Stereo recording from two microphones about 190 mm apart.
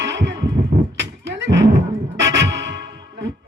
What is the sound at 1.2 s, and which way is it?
Music, 70° right (ahead or behind).